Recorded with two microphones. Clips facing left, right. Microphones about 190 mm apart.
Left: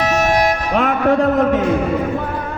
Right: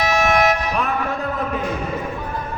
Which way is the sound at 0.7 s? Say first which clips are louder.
Left 7 dB; 85° left.